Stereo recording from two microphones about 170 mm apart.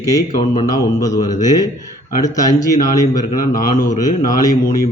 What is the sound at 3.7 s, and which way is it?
Speech, 50° left (ahead or behind).